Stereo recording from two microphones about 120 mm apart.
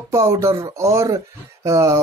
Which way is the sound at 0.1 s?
25° right (ahead or behind).